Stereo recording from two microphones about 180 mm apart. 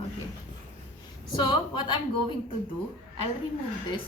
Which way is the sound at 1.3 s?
25° left (ahead or behind).